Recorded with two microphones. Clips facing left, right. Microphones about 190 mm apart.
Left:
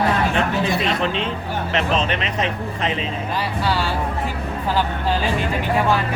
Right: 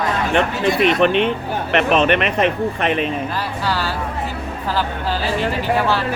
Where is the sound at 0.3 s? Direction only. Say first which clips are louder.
Right 3 dB; 65° right (ahead or behind).